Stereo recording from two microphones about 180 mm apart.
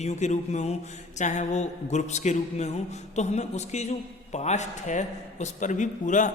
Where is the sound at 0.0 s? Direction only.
40° left (ahead or behind).